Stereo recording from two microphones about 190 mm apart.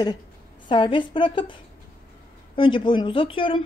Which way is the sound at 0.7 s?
25° left (ahead or behind).